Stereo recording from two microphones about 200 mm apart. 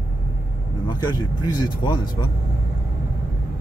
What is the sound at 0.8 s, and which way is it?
Speech, 20° left (ahead or behind).